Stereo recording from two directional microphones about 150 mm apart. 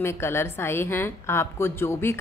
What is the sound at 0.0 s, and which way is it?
A woman's voice, 15° left (ahead or behind).